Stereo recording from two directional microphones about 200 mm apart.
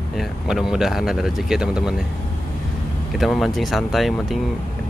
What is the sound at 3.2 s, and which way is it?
A man's voice, centre (ahead or behind).